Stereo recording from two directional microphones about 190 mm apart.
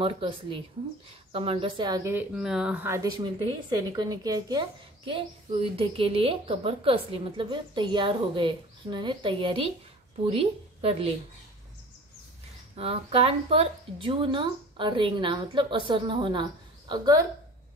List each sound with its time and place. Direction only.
0.0 s a woman's voice: 25° right (ahead or behind)
12.7 s a woman's voice: 30° right (ahead or behind)